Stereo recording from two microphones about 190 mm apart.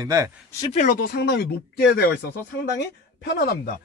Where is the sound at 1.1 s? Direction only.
55° left (ahead or behind).